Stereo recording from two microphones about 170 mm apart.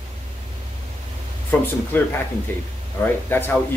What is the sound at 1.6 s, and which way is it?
Speech, 10° left (ahead or behind).